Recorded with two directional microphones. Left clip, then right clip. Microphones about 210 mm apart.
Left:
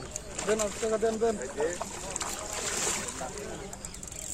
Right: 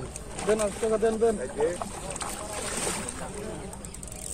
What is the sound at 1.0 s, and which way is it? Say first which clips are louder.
Speech: right 4 dB; 35° right (ahead or behind).